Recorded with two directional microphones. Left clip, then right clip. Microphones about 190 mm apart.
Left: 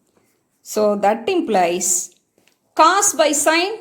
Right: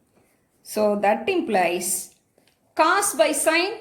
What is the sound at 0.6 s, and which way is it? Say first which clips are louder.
A woman's voice: left 4 dB; 40° left (ahead or behind).